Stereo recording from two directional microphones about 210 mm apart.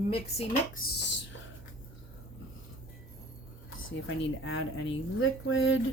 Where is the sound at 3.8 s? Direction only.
70° left (ahead or behind).